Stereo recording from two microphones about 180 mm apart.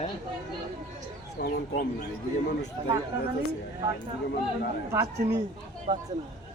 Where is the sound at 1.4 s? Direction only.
65° left (ahead or behind).